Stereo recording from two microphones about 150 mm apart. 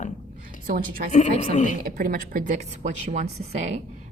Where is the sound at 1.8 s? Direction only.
75° right (ahead or behind); by 3.8 s 50° right (ahead or behind).